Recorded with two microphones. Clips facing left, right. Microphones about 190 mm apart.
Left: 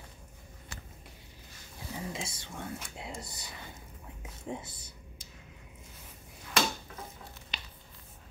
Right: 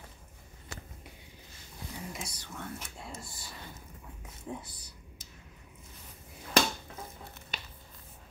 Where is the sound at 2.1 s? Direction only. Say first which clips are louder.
Left 2 dB; 25° left (ahead or behind).